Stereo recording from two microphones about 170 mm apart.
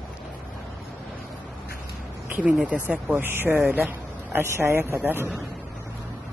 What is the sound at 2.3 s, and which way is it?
Speech, 5° right (ahead or behind).